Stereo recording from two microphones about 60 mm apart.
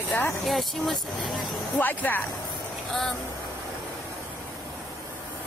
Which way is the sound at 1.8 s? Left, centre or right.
Left.